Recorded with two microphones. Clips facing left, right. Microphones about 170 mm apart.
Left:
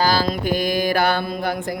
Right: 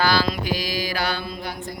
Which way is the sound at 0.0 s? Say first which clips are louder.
Left 2 dB; 45° left (ahead or behind).